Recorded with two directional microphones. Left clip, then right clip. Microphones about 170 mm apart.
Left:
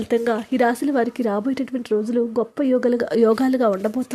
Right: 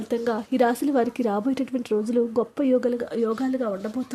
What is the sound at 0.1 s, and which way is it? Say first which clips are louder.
Speech: left 5 dB; 30° left (ahead or behind).